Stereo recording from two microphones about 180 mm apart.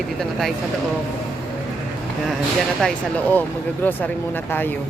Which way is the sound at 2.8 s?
5° left (ahead or behind).